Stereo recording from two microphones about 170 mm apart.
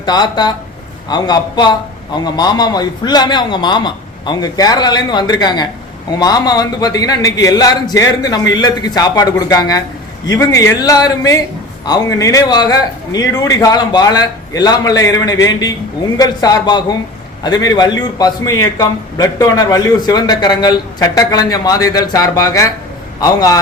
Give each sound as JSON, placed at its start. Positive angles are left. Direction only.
{"t": 0.0, "sound": "a man's voice", "side_deg": 25}